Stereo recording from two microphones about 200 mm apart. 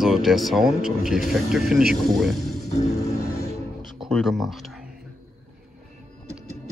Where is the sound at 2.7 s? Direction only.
35° left (ahead or behind).